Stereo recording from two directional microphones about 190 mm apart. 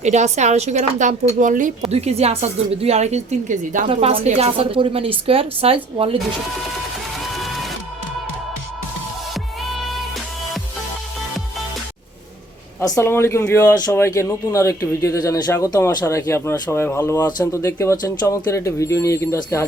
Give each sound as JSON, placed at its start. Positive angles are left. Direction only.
{"t": 0.0, "sound": "a woman's voice", "side_deg": -35}
{"t": 3.8, "sound": "a woman's voice", "side_deg": -30}
{"t": 7.3, "sound": "music", "side_deg": 0}
{"t": 12.8, "sound": "speech", "side_deg": 15}